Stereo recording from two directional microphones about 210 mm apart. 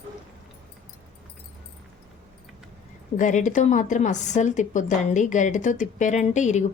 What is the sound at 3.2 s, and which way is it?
A woman's voice, 35° left (ahead or behind).